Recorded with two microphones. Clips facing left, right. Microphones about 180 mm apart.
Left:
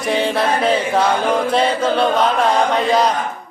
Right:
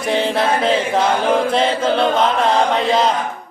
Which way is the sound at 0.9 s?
25° right (ahead or behind).